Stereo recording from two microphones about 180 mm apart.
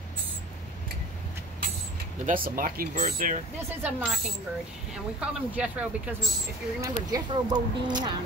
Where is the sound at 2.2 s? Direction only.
50° right (ahead or behind).